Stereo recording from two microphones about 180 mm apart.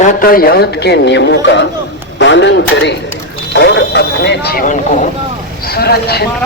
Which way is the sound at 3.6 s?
80° left.